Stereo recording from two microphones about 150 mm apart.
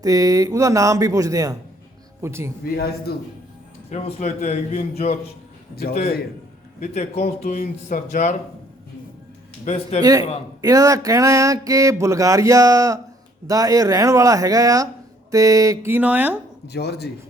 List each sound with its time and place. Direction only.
0.0 s a sound: 25° right (ahead or behind)
2.2 s speech: 15° right (ahead or behind)
2.6 s a man's voice: 90° left
3.8 s speech: 50° left (ahead or behind)
6.0 s a man's voice: 85° left
6.7 s speech: 50° left (ahead or behind)
9.6 s speech: 45° left (ahead or behind)
10.0 s a sound: 25° right (ahead or behind)
15.3 s speech: 20° right (ahead or behind)
16.6 s a man's voice: 90° left